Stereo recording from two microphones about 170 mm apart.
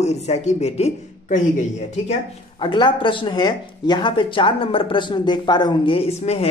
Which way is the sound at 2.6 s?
25° left (ahead or behind).